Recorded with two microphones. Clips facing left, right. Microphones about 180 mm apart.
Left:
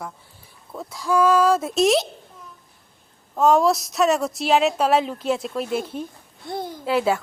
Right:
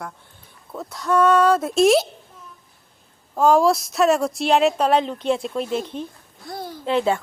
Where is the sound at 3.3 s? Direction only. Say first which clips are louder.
Right 1 dB; centre (ahead or behind).